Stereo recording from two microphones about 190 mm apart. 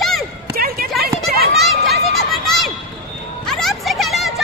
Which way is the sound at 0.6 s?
50° right (ahead or behind).